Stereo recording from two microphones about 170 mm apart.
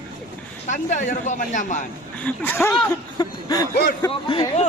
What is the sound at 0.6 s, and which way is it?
Speech, 50° left (ahead or behind).